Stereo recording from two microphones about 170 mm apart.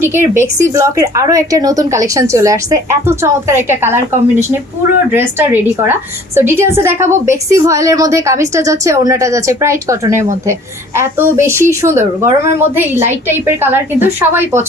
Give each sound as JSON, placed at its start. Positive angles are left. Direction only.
{"t": 0.0, "sound": "a woman's voice", "side_deg": -15}